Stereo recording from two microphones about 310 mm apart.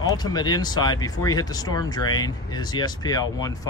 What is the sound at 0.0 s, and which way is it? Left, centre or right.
Speech, centre.